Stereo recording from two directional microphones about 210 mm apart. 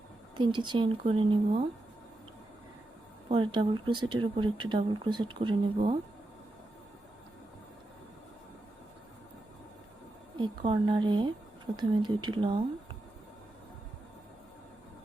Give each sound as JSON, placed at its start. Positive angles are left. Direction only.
{"t": 0.3, "sound": "speech", "side_deg": -20}
{"t": 3.2, "sound": "speech", "side_deg": -25}
{"t": 10.3, "sound": "a woman's voice", "side_deg": -25}